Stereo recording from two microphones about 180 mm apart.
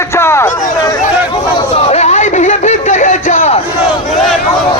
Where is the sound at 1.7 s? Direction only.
35° left (ahead or behind).